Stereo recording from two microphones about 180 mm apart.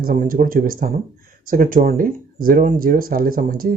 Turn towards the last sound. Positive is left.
turn(degrees=-55)  # may be behind; listen again after turning